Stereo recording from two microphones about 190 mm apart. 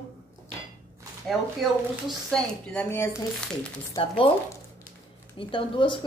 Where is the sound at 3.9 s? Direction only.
30° left (ahead or behind).